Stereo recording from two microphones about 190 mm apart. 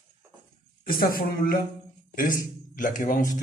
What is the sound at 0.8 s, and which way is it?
Speech, 50° left (ahead or behind).